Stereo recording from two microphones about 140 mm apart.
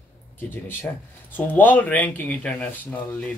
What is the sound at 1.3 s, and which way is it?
Speech, 15° left (ahead or behind).